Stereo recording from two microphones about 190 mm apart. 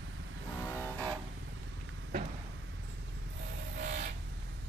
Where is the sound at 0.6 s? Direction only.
10° left (ahead or behind).